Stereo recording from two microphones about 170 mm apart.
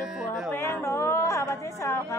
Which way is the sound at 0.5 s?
15° left (ahead or behind).